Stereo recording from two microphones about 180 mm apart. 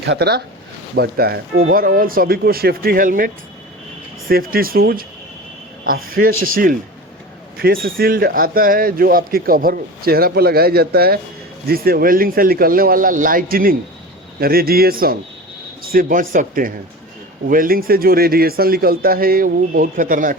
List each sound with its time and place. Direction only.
0.0 s speech: 70° right (ahead or behind); by 20.3 s 50° right (ahead or behind)